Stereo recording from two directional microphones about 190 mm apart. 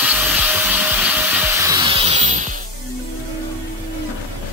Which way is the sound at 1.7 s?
25° right (ahead or behind).